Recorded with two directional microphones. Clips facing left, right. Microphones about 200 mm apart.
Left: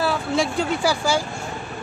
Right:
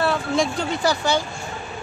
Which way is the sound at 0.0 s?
5° left (ahead or behind).